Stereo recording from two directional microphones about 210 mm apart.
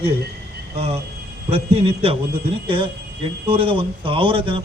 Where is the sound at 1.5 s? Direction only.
30° right (ahead or behind).